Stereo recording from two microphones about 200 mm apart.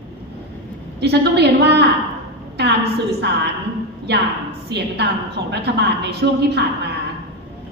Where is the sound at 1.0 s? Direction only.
55° right (ahead or behind).